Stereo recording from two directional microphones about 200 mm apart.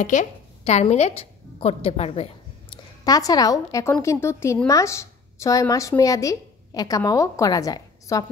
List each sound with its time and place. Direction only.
0.0 s a woman's voice: 40° left (ahead or behind)
2.7 s a woman's voice: 20° left (ahead or behind)